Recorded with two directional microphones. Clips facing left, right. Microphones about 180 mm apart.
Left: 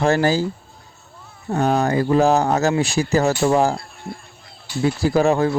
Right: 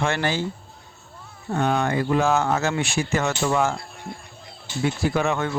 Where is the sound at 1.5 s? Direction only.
35° left (ahead or behind).